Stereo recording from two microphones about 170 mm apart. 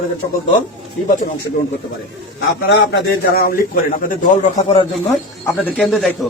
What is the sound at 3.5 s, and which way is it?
Speech, 55° left (ahead or behind).